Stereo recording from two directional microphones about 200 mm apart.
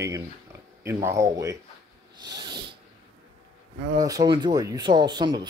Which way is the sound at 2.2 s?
20° right (ahead or behind).